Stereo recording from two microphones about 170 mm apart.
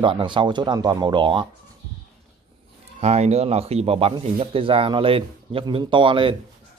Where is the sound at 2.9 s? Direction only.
40° right (ahead or behind).